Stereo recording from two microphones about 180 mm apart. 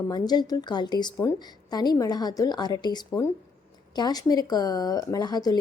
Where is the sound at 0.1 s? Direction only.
20° left (ahead or behind).